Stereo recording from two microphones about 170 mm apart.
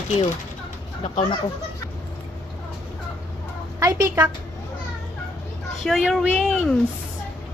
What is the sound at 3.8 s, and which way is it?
Speech, 20° right (ahead or behind).